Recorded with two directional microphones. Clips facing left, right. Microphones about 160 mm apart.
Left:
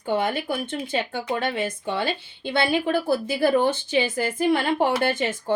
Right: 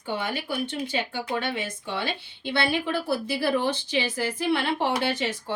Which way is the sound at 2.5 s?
50° left (ahead or behind).